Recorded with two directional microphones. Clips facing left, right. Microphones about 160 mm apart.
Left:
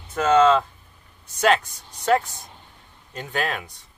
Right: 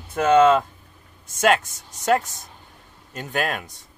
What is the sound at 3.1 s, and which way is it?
Speech, 45° right (ahead or behind).